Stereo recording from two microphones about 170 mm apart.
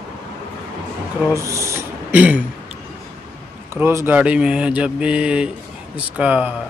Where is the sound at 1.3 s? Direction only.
15° right (ahead or behind).